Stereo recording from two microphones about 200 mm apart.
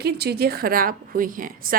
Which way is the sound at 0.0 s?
55° right (ahead or behind).